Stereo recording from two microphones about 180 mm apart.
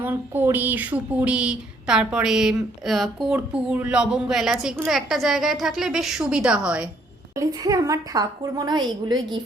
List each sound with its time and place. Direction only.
0.0 s speech: 10° right (ahead or behind)
7.3 s a woman's voice: 20° right (ahead or behind)